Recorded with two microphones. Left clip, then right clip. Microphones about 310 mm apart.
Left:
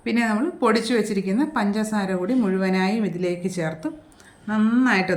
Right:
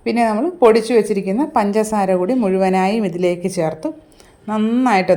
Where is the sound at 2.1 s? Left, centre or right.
Right.